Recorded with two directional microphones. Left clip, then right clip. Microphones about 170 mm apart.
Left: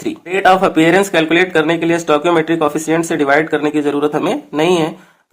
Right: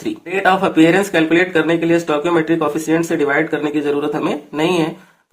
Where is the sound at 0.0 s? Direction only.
35° left (ahead or behind).